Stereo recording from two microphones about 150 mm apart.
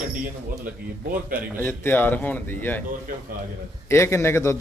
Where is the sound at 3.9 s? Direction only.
15° left (ahead or behind).